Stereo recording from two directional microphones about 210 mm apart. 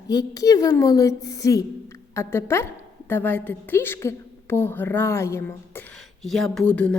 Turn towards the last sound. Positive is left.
turn(degrees=5)  # may be behind; listen again after turning